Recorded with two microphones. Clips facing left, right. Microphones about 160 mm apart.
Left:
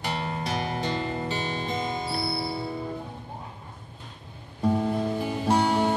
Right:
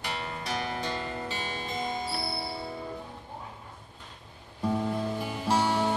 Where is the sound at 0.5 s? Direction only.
25° left (ahead or behind).